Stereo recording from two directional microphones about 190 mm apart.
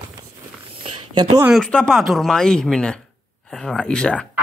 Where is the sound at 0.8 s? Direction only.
30° right (ahead or behind).